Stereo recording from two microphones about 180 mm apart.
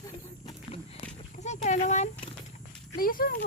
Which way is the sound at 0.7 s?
35° left (ahead or behind).